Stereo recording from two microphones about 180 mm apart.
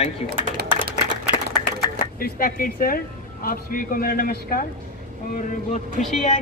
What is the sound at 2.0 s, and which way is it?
Speech, 50° left (ahead or behind).